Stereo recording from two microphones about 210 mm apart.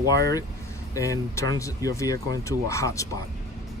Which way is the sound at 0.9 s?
15° left (ahead or behind).